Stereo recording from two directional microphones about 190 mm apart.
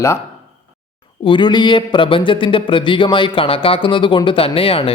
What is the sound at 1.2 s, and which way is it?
Speech, 25° left (ahead or behind).